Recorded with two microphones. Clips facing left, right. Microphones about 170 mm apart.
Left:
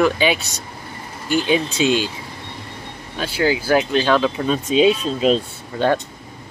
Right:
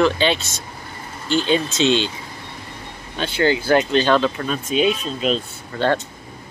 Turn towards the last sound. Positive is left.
turn(degrees=15)  # may be behind; listen again after turning